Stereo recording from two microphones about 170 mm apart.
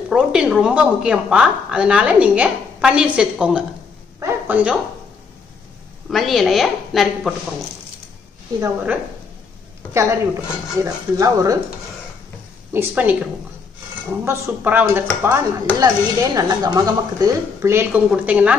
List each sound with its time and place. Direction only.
0.1 s speech: 5° right (ahead or behind)
6.0 s speech: centre (ahead or behind)
9.9 s speech: 15° right (ahead or behind)
12.7 s speech: 10° right (ahead or behind)
14.2 s speech: 10° right (ahead or behind)